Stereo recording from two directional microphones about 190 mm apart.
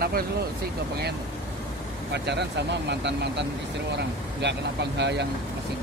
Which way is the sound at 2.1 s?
65° right (ahead or behind).